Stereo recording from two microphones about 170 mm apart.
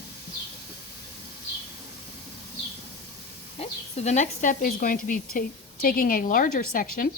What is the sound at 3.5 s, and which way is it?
Speech, 40° left (ahead or behind).